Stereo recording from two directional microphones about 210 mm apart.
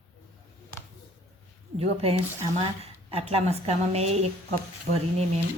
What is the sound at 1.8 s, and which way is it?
Speech, 30° right (ahead or behind).